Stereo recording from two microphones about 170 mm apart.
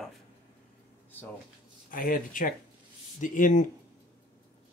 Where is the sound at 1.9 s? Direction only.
55° left (ahead or behind).